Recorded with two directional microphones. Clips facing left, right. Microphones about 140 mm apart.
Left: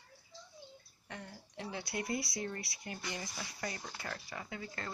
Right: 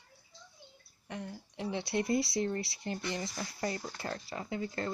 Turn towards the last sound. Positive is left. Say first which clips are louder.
# right 8 dB
turn(degrees=-30)  # may be behind; listen again after turning